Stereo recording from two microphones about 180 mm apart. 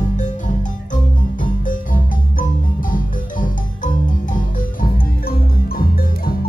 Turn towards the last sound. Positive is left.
turn(degrees=55)  # may be behind; listen again after turning